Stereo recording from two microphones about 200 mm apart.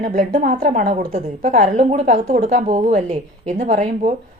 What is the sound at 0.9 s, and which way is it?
A woman's voice, 30° right (ahead or behind).